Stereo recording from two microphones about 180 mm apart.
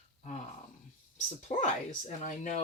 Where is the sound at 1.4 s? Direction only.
40° left (ahead or behind).